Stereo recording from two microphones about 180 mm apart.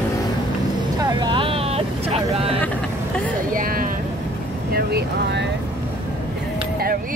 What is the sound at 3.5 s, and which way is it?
Vehicle, 50° right (ahead or behind).